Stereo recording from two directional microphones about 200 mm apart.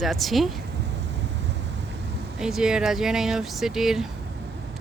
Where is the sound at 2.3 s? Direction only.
Centre (ahead or behind).